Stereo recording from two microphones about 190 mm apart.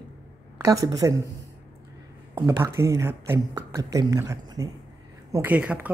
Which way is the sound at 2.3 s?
15° right (ahead or behind).